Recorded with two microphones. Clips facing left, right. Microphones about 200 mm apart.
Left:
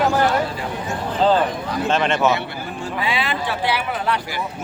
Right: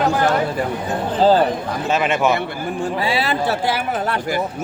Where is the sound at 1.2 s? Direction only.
35° right (ahead or behind).